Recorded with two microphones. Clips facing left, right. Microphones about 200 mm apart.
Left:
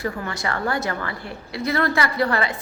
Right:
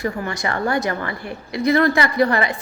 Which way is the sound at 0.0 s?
20° right (ahead or behind).